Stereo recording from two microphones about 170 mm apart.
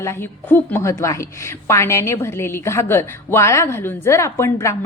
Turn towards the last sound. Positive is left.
turn(degrees=15)  # may be behind; listen again after turning